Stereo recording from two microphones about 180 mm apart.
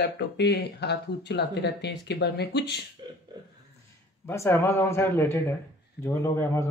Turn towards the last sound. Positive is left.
turn(degrees=15)  # may be behind; listen again after turning